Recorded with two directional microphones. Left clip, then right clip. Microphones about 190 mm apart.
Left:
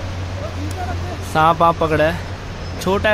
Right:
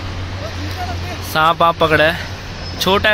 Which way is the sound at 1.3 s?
Centre (ahead or behind).